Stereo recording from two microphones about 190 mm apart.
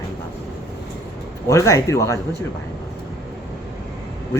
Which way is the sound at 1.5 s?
15° left (ahead or behind).